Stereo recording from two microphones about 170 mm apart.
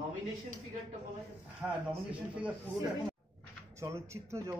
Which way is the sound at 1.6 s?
10° right (ahead or behind).